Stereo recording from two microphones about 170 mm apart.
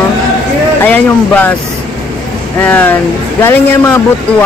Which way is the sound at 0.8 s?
10° left (ahead or behind).